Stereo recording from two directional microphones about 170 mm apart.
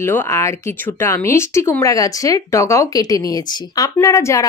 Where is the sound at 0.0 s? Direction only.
15° left (ahead or behind).